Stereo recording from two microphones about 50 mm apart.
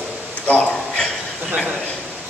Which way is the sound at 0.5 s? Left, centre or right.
Left.